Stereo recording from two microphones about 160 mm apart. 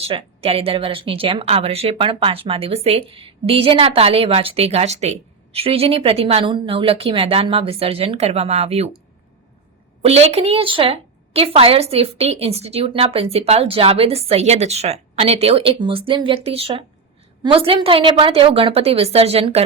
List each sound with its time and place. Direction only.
0.0 s a woman's voice: 40° right (ahead or behind)
10.0 s a woman's voice: 40° right (ahead or behind)